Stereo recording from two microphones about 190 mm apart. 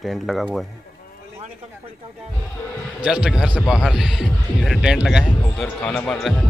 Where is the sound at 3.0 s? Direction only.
5° right (ahead or behind).